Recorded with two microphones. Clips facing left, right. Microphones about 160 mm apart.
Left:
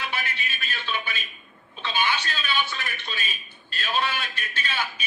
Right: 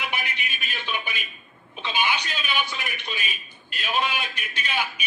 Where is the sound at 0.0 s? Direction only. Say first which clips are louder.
Even; 15° right (ahead or behind).